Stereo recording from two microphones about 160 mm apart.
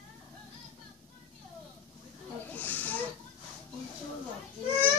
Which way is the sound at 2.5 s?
10° left (ahead or behind).